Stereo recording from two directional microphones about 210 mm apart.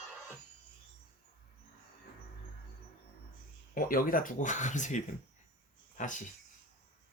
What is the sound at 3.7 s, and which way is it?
Speech, 40° left (ahead or behind).